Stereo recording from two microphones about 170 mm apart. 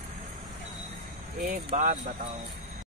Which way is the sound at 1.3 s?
50° right (ahead or behind).